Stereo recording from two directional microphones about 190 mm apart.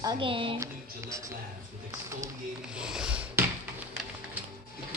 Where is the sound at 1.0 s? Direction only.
15° right (ahead or behind).